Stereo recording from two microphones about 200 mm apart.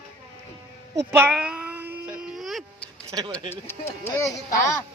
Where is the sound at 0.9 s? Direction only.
15° right (ahead or behind).